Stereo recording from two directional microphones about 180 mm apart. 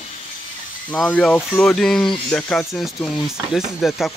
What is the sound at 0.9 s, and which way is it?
Speech, 5° left (ahead or behind).